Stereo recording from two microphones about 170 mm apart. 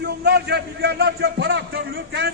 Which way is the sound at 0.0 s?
75° right (ahead or behind).